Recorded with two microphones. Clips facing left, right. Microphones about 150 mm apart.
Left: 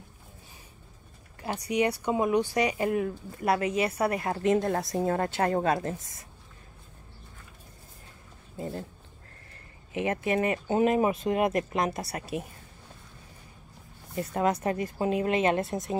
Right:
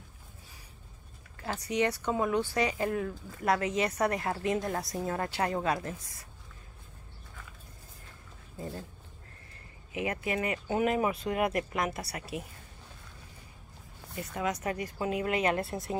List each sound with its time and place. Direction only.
1.4 s speech: 15° left (ahead or behind)
4.0 s a woman's voice: 30° left (ahead or behind)
4.7 s a woman's voice: 40° left (ahead or behind)
9.9 s speech: 30° left (ahead or behind)
14.1 s speech: 40° left (ahead or behind); by 16.0 s 20° left (ahead or behind)